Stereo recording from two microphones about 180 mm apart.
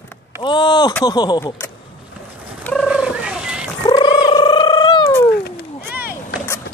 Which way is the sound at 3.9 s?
25° left (ahead or behind).